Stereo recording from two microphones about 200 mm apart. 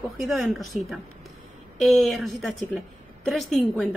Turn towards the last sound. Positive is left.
turn(degrees=0)  # may be behind; listen again after turning